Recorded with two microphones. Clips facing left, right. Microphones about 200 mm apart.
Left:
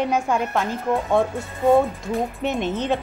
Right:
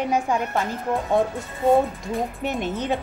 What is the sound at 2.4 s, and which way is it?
Speech, 10° right (ahead or behind).